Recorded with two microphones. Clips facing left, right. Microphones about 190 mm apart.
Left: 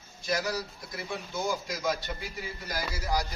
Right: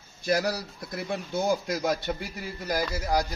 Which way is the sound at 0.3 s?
60° right (ahead or behind).